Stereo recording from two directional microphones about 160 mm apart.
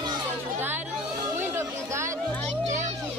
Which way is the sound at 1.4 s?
15° right (ahead or behind).